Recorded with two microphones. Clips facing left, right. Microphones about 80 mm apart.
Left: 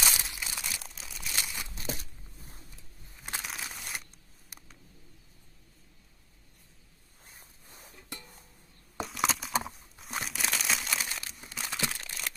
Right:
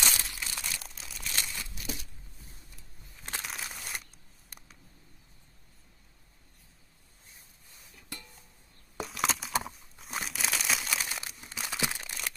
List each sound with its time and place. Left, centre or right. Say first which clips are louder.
0.0 s crumpling: left 1 dB; centre
0.6 s crumpling: even; centre
1.8 s a sound: left 4 dB; left
3.3 s crumpling: even; centre
7.2 s a sound: left 4 dB; left
9.0 s crumpling: left 1 dB; centre